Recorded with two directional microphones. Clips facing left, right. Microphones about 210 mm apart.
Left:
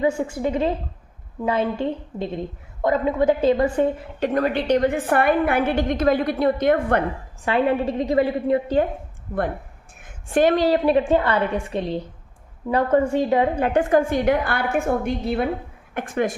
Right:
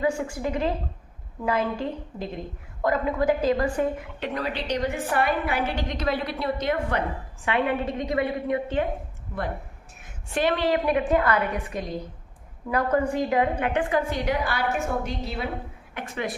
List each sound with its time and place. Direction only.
0.0 s a woman's voice: 25° left (ahead or behind)
4.2 s a woman's voice: 50° left (ahead or behind)
7.4 s a woman's voice: 35° left (ahead or behind)
10.0 s a woman's voice: 50° left (ahead or behind); by 13.7 s 25° left (ahead or behind)
13.7 s a woman's voice: 50° left (ahead or behind)